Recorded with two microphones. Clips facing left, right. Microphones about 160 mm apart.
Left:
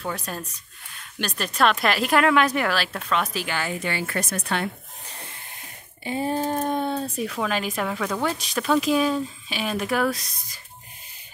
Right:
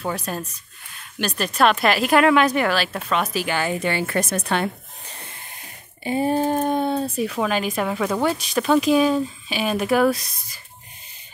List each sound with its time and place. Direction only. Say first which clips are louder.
0.1 s speech: right 4 dB; 5° right (ahead or behind)
3.5 s a woman's voice: right 5 dB; 25° right (ahead or behind)
6.0 s speech: right 5 dB; 10° right (ahead or behind)